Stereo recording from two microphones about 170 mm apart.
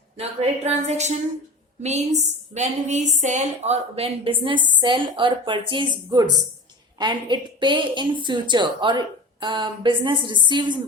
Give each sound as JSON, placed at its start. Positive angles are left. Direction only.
{"t": 0.2, "sound": "a woman's voice", "side_deg": -40}